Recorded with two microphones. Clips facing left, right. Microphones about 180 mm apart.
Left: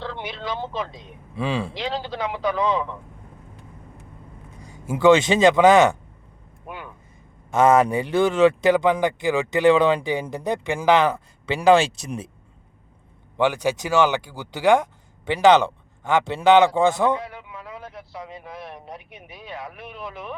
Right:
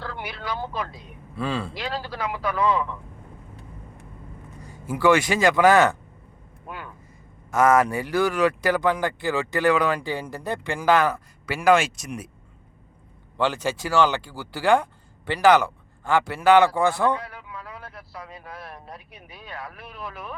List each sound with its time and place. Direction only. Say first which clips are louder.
0.0 s speech: left 3 dB; 20° left (ahead or behind)
4.6 s speech: left 4 dB; 15° left (ahead or behind)
6.7 s vehicle: left 1 dB; 20° left (ahead or behind)
7.5 s speech: left 2 dB; 25° left (ahead or behind)
13.3 s speech: left 3 dB; 15° left (ahead or behind)